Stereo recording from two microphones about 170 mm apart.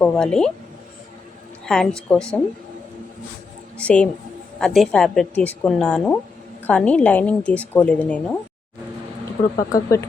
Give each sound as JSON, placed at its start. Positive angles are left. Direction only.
{"t": 0.0, "sound": "speech", "side_deg": 5}
{"t": 1.6, "sound": "speech", "side_deg": 5}
{"t": 3.8, "sound": "speech", "side_deg": 5}
{"t": 9.6, "sound": "speech", "side_deg": 20}